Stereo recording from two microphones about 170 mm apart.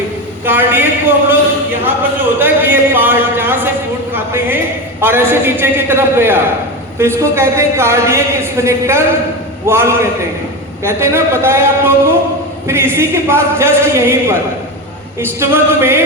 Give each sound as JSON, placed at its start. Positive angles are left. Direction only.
{"t": 0.4, "sound": "a man's voice", "side_deg": -10}
{"t": 2.4, "sound": "a man's voice", "side_deg": -10}